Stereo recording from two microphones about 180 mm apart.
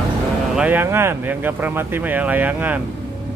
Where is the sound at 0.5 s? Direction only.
10° right (ahead or behind).